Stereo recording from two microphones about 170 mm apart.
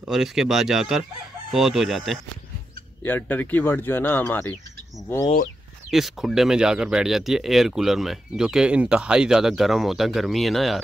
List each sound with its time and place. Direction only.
0.0 s speech: 5° right (ahead or behind)
3.0 s speech: 10° left (ahead or behind)
5.9 s speech: centre (ahead or behind)